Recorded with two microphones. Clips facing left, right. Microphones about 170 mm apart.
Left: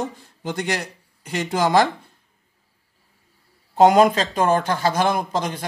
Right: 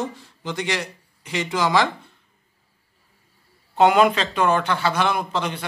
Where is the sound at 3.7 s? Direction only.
40° left (ahead or behind).